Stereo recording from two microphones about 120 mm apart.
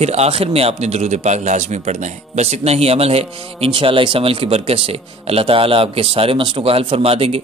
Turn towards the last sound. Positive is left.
turn(degrees=-55)  # may be behind; listen again after turning